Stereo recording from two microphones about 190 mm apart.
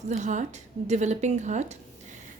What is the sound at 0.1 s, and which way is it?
A woman's voice, 40° right (ahead or behind).